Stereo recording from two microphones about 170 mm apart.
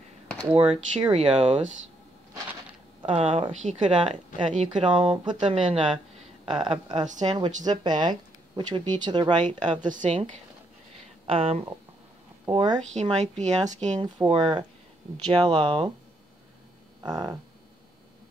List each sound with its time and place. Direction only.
0.5 s speech: 10° right (ahead or behind)
1.1 s speech: 35° right (ahead or behind)
3.0 s speech: 35° right (ahead or behind)
4.6 s speech: 30° right (ahead or behind)
9.8 s a woman's voice: 50° right (ahead or behind)
11.2 s speech: 35° right (ahead or behind)
14.0 s speech: 25° right (ahead or behind)
17.0 s speech: 20° right (ahead or behind)